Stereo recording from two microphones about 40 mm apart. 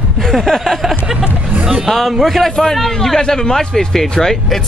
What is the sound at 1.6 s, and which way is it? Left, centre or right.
Speech, centre.